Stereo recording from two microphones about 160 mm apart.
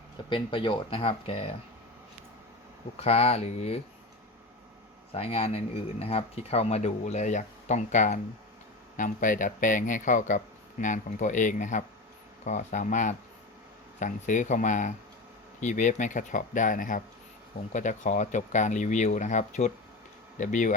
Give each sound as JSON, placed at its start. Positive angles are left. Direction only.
{"t": 0.3, "sound": "speech", "side_deg": 30}
{"t": 3.0, "sound": "speech", "side_deg": 40}
{"t": 5.1, "sound": "speech", "side_deg": 40}